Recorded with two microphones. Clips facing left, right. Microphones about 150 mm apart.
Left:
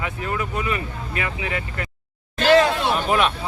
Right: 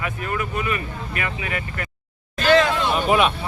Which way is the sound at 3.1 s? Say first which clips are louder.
Right 3 dB; 5° right (ahead or behind).